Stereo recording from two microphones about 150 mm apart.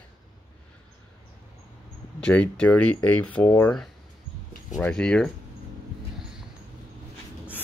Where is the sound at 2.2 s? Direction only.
5° left (ahead or behind).